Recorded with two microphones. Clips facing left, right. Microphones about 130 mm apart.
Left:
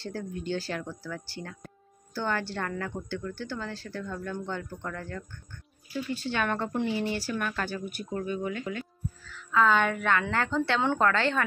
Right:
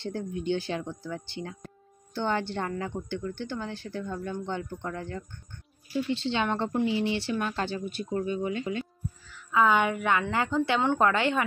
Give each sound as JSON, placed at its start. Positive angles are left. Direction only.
{"t": 0.0, "sound": "speech", "side_deg": -20}
{"t": 7.2, "sound": "a woman's voice", "side_deg": -25}